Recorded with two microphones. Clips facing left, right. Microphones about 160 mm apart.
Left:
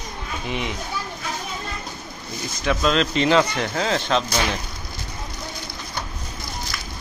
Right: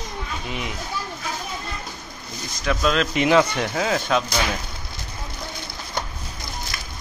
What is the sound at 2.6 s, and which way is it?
Speech, centre (ahead or behind).